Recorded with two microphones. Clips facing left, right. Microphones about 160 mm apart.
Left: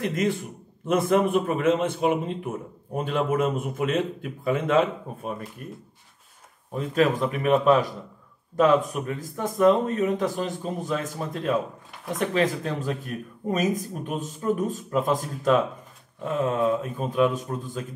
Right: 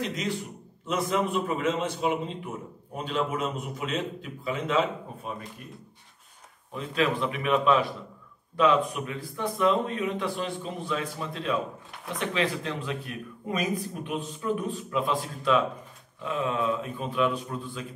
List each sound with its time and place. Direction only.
0.0 s speech: 55° left (ahead or behind)
6.7 s speech: 45° left (ahead or behind)